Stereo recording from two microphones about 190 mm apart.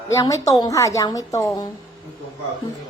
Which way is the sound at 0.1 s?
15° left (ahead or behind).